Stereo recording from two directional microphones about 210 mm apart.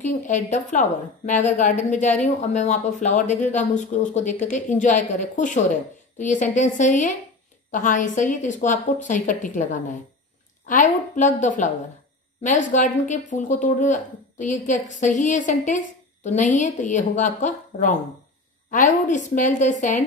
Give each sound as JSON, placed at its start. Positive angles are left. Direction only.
{"t": 0.0, "sound": "speech", "side_deg": 35}